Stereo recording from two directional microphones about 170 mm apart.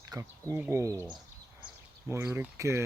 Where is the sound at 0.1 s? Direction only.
20° right (ahead or behind).